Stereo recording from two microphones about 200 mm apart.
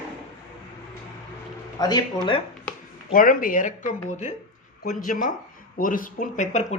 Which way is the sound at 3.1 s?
45° left (ahead or behind).